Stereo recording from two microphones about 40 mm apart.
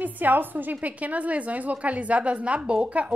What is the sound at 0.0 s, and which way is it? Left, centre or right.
A woman's voice, right.